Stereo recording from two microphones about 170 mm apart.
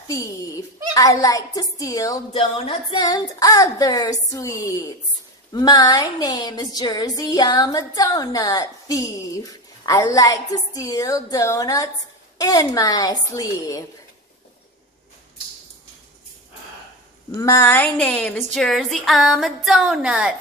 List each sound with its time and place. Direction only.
0.1 s a child's voice: 20° left (ahead or behind)
2.3 s a sound: 35° left (ahead or behind)
3.1 s speech: 20° left (ahead or behind)
17.4 s a woman's voice: 15° left (ahead or behind); by 20.3 s 5° right (ahead or behind)